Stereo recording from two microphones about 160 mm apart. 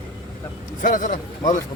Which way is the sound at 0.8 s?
55° left (ahead or behind).